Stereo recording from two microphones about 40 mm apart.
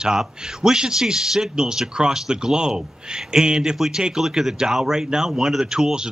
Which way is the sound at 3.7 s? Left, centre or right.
Centre.